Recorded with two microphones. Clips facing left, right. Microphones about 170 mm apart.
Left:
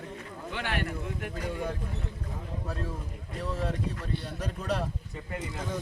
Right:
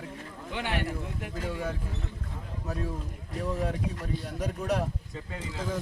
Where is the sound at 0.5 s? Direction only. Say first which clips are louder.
Right 2 dB; 20° right (ahead or behind).